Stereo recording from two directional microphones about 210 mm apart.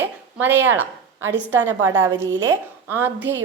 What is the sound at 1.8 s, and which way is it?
Speech, 75° right (ahead or behind).